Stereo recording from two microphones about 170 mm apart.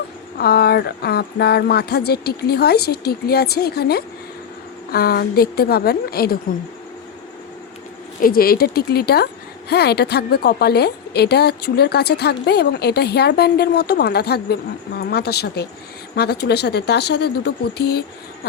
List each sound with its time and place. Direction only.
0.3 s a woman's voice: 70° left (ahead or behind)
8.2 s a woman's voice: 60° left (ahead or behind)